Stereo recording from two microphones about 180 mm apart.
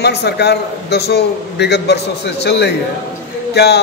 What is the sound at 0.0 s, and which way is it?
A man's voice, 70° left (ahead or behind).